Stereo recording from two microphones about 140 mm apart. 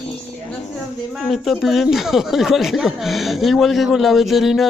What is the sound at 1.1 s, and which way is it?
Speech, centre (ahead or behind).